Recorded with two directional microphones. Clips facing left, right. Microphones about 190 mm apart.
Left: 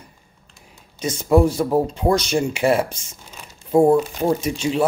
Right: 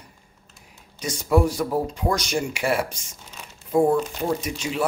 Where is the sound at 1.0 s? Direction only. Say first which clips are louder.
Left 4 dB; 25° left (ahead or behind).